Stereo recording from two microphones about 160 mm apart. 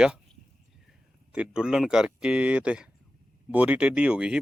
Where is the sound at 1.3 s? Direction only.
5° right (ahead or behind).